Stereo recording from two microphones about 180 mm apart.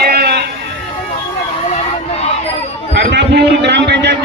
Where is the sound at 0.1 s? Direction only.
60° right (ahead or behind).